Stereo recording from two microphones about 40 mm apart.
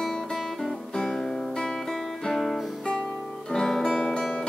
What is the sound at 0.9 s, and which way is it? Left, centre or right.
Music, centre.